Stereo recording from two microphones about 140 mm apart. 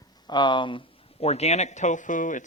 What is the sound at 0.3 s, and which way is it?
Speech, 35° left (ahead or behind).